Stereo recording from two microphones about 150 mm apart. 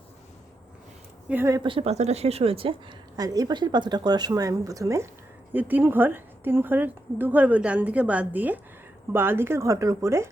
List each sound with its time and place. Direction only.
1.3 s a woman's voice: 15° right (ahead or behind)
1.6 s speech: 40° right (ahead or behind)
3.2 s a woman's voice: 25° right (ahead or behind)